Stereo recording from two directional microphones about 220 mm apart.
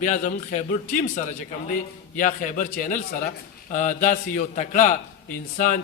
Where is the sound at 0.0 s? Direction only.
35° left (ahead or behind).